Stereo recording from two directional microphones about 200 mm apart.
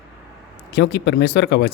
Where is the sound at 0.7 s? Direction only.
55° left (ahead or behind).